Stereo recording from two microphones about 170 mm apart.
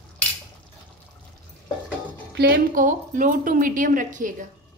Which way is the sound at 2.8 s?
50° right (ahead or behind).